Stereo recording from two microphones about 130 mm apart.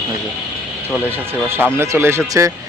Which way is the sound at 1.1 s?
15° right (ahead or behind).